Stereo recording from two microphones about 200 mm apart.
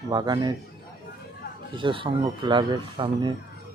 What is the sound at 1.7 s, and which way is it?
Speech, 25° right (ahead or behind).